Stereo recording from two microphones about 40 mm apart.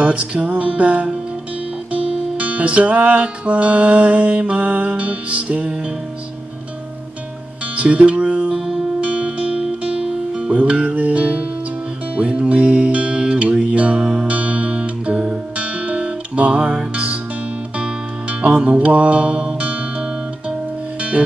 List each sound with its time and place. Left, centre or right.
0.0 s music: right
7.7 s music: right
9.0 s music: right
10.6 s music: right
18.4 s music: right